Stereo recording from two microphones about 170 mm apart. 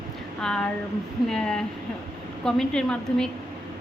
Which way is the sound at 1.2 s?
5° left (ahead or behind).